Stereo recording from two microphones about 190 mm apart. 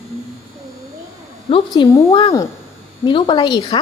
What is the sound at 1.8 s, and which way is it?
Speech, 25° left (ahead or behind).